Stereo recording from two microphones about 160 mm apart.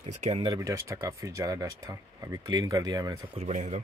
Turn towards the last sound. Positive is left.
turn(degrees=-45)  # may be behind; listen again after turning